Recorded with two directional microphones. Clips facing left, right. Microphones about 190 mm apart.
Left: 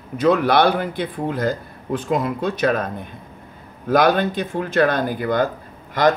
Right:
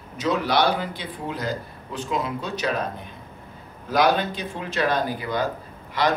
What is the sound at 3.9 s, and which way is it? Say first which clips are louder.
Speech: left 4 dB; 55° left (ahead or behind).